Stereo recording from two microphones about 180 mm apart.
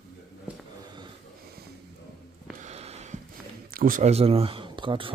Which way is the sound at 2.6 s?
35° right (ahead or behind).